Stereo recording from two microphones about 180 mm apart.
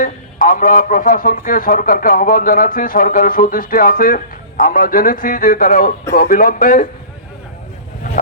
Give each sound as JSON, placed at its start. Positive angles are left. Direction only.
{"t": 0.0, "sound": "a man's voice", "side_deg": 50}